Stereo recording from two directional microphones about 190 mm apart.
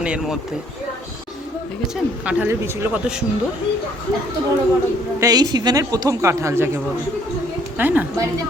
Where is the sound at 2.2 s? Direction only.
10° right (ahead or behind).